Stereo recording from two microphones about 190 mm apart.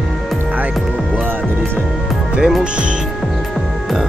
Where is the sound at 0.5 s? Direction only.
10° right (ahead or behind).